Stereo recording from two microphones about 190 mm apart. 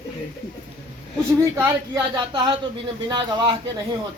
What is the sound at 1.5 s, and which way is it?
Speech, 20° right (ahead or behind).